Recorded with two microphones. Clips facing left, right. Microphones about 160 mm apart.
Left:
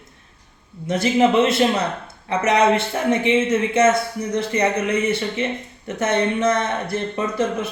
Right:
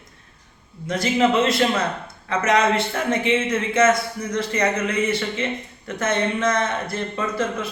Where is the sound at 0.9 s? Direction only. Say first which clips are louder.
Left 2 dB; 20° left (ahead or behind).